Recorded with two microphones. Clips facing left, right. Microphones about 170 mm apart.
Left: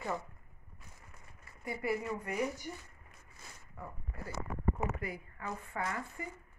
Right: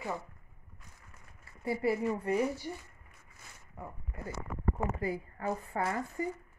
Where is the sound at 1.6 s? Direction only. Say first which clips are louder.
Right 5 dB; 30° right (ahead or behind).